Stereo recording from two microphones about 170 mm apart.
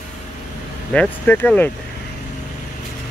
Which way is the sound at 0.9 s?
10° left (ahead or behind).